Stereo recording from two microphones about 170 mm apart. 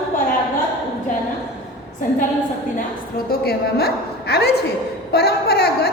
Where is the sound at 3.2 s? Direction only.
65° left (ahead or behind).